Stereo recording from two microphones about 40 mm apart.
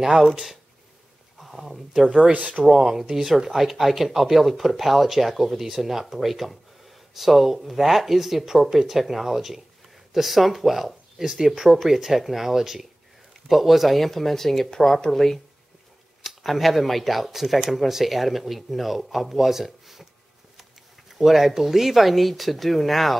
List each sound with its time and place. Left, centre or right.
0.0 s speech: centre
2.0 s speech: centre
2.3 s speech: right
2.6 s speech: centre
16.2 s speech: centre
21.1 s speech: centre